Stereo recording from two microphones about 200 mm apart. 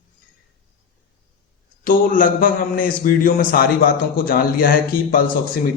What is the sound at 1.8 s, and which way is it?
A man's voice, 45° left (ahead or behind).